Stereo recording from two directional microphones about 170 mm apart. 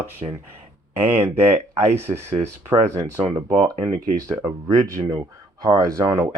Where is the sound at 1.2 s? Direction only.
15° right (ahead or behind).